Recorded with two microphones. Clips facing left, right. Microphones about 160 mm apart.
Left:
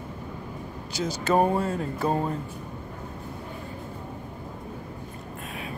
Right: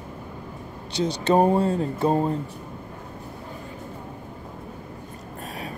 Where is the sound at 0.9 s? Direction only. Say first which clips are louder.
Right 3 dB; 30° right (ahead or behind).